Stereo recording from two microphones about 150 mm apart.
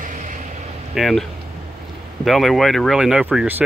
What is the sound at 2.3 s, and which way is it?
Speech, centre (ahead or behind).